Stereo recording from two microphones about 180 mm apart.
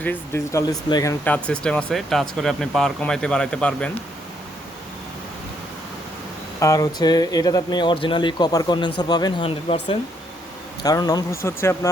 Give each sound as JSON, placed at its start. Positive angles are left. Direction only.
{"t": 0.0, "sound": "speech", "side_deg": 15}
{"t": 1.2, "sound": "speech", "side_deg": 5}
{"t": 6.6, "sound": "speech", "side_deg": 20}
{"t": 10.8, "sound": "speech", "side_deg": 20}